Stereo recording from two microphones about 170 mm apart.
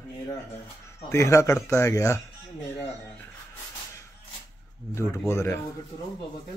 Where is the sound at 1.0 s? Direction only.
15° left (ahead or behind).